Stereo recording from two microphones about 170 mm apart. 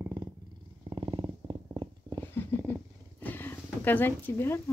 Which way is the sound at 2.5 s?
10° left (ahead or behind).